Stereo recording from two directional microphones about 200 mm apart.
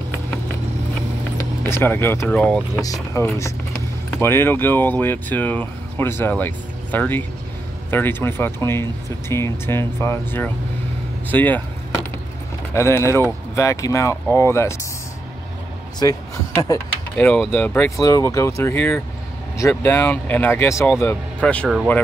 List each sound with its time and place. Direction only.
1.4 s speech: 10° left (ahead or behind)
2.8 s speech: 15° left (ahead or behind)
12.7 s speech: 15° left (ahead or behind)
16.0 s speech: 20° left (ahead or behind)